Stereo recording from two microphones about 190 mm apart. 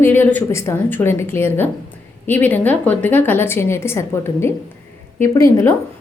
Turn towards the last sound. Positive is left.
turn(degrees=15)  # may be behind; listen again after turning